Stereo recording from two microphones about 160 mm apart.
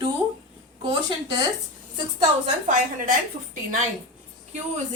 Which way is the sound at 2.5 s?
55° right (ahead or behind).